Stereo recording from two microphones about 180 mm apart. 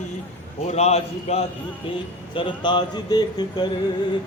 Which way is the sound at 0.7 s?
35° left (ahead or behind).